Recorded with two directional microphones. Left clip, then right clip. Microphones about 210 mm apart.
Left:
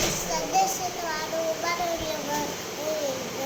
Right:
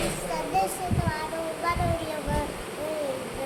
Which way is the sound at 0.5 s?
5° right (ahead or behind).